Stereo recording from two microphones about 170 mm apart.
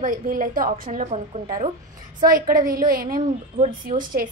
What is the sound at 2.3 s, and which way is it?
A woman's voice, 55° right (ahead or behind).